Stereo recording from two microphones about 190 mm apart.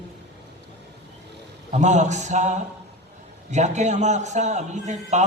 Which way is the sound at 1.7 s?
40° right (ahead or behind).